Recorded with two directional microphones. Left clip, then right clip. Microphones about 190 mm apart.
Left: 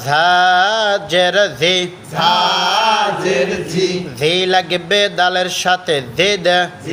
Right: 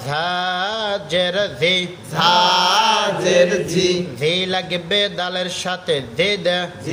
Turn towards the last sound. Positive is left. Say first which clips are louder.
# left 5 dB
turn(degrees=25)  # may be behind; listen again after turning